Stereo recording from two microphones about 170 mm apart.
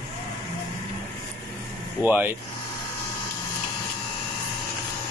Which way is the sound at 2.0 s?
10° right (ahead or behind).